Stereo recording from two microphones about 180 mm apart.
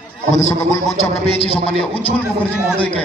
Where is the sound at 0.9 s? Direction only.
35° left (ahead or behind).